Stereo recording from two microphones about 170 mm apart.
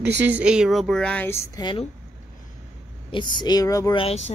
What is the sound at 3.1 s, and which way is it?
Speech, 25° left (ahead or behind).